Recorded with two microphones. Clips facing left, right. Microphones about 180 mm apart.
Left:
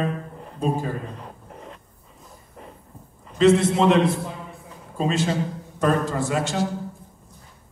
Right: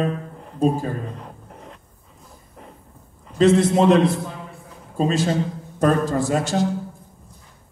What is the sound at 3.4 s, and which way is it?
A man's voice, 40° right (ahead or behind).